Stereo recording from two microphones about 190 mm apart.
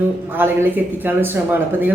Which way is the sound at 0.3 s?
10° right (ahead or behind).